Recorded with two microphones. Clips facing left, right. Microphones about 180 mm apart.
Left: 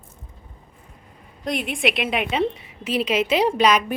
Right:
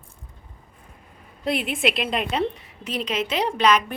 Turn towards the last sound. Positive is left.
turn(degrees=10)  # may be behind; listen again after turning